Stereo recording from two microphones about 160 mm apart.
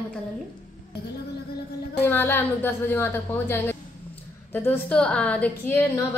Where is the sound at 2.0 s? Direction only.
10° left (ahead or behind).